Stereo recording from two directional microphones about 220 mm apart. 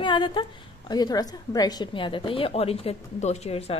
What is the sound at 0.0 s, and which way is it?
A woman's voice, 20° left (ahead or behind).